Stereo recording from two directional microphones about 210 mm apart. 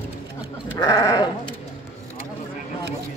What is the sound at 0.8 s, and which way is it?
Sheep, 15° left (ahead or behind).